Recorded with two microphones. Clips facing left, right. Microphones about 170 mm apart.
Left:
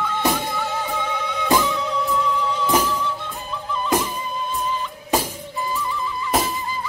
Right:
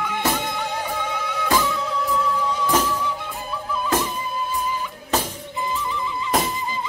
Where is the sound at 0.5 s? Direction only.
15° right (ahead or behind).